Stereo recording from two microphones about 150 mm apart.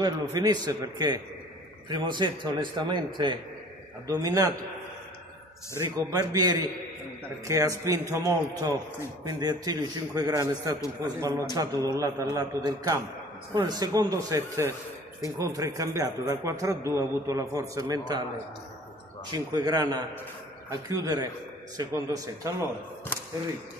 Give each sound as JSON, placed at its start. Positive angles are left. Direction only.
{"t": 0.0, "sound": "a man's voice", "side_deg": -25}
{"t": 5.9, "sound": "a man's voice", "side_deg": -25}
{"t": 19.3, "sound": "a man's voice", "side_deg": -25}